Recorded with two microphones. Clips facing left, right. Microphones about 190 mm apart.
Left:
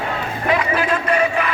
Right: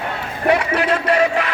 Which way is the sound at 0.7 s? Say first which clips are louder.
Right 1 dB; 80° right.